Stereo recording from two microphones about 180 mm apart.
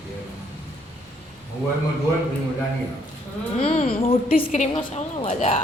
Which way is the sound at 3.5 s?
40° left (ahead or behind).